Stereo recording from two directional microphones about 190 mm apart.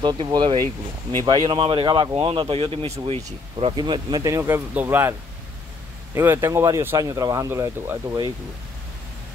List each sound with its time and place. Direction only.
0.0 s speech: 20° right (ahead or behind)
6.1 s speech: 10° right (ahead or behind)